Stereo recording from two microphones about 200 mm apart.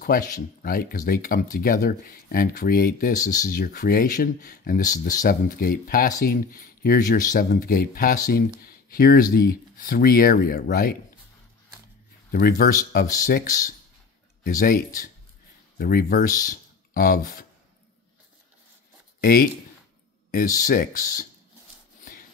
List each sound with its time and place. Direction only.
0.0 s speech: 45° left (ahead or behind)
12.3 s speech: 50° left (ahead or behind)
19.2 s speech: 45° left (ahead or behind)
20.5 s speech: 45° left (ahead or behind)